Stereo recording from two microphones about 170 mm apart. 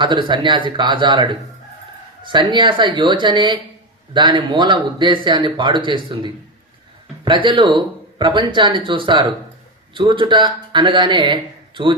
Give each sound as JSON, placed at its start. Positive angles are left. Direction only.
{"t": 0.0, "sound": "speech", "side_deg": -30}